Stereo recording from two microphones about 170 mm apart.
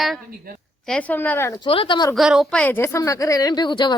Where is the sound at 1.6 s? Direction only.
30° left (ahead or behind).